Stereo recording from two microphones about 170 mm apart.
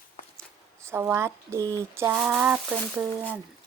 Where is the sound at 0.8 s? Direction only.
15° right (ahead or behind).